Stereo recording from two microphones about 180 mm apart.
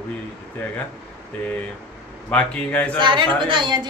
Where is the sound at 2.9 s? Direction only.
25° right (ahead or behind).